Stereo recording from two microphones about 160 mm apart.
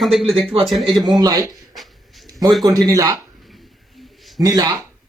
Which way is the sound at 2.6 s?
25° right (ahead or behind).